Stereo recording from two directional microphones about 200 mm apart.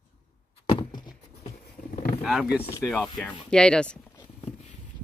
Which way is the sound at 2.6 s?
10° left (ahead or behind).